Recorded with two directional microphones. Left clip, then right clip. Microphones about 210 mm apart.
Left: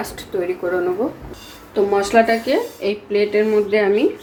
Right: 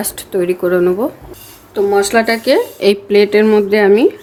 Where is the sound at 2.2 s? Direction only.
50° right (ahead or behind).